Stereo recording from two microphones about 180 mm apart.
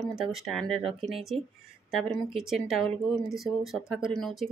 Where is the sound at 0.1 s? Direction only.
Centre (ahead or behind).